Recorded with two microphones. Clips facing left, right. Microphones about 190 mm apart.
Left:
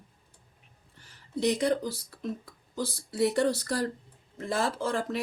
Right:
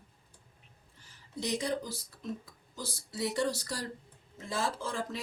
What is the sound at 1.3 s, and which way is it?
Speech, 60° left (ahead or behind).